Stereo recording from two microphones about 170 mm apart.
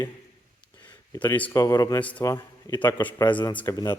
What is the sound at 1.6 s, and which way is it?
A man's voice, 20° left (ahead or behind).